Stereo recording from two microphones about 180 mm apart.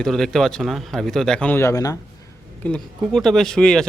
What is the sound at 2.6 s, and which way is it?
Speech, 5° left (ahead or behind).